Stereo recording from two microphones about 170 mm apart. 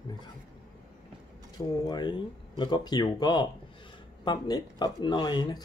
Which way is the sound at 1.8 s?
25° left (ahead or behind).